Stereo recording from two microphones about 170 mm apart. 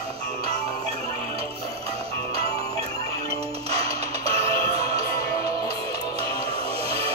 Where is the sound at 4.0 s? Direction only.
35° right (ahead or behind).